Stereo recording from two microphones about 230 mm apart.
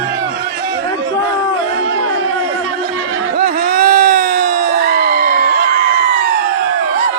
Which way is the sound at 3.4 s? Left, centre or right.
Right.